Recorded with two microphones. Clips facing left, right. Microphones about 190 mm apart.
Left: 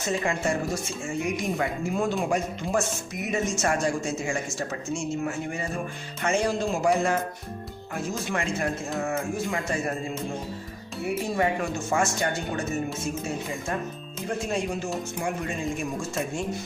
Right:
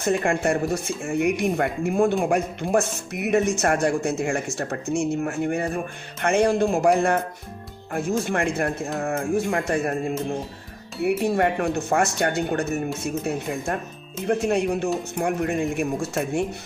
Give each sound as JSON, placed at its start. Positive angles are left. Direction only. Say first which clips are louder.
{"t": 0.0, "sound": "speech", "louder": "right 5 dB", "side_deg": -60}
{"t": 8.2, "sound": "speech", "louder": "right 4 dB", "side_deg": -55}